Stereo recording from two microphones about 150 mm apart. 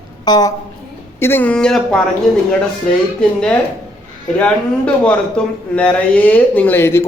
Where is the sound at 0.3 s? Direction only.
25° left (ahead or behind).